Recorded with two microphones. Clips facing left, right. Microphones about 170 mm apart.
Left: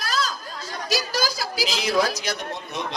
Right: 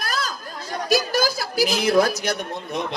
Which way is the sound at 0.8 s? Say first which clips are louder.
Right 5 dB; 55° right (ahead or behind).